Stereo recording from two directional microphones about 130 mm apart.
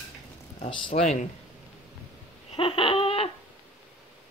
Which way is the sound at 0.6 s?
40° left (ahead or behind).